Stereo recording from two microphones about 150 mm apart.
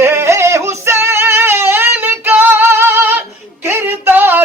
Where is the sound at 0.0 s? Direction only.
15° right (ahead or behind).